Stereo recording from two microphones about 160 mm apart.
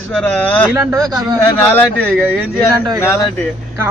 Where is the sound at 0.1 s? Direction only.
5° left (ahead or behind).